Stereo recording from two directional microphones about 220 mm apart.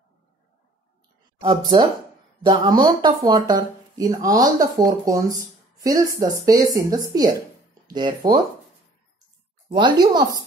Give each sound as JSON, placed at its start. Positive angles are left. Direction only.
{"t": 2.4, "sound": "speech", "side_deg": -20}
{"t": 9.7, "sound": "a woman's voice", "side_deg": -20}